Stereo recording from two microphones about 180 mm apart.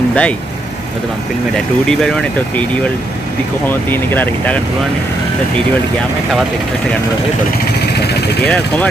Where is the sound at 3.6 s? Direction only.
10° left (ahead or behind).